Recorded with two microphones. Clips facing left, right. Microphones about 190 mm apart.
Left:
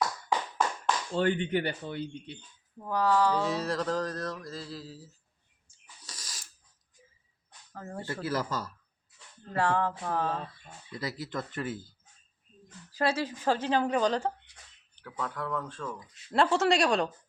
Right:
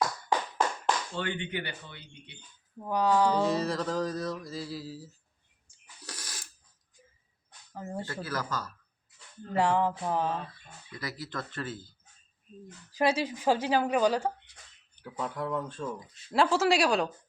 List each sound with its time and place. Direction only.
1.1 s speech: 40° left (ahead or behind)
2.8 s a woman's voice: 15° right (ahead or behind)
3.4 s mantra: centre (ahead or behind)
6.0 s a sound: 65° right (ahead or behind)
7.7 s a woman's voice: 15° right (ahead or behind)
8.0 s speech: 25° left (ahead or behind)
9.5 s a woman's voice: 15° right (ahead or behind)
10.8 s speech: 25° left (ahead or behind)
12.9 s a woman's voice: 15° right (ahead or behind)
16.3 s mantra: centre (ahead or behind)